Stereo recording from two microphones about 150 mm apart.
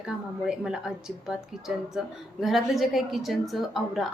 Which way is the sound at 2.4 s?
Centre (ahead or behind).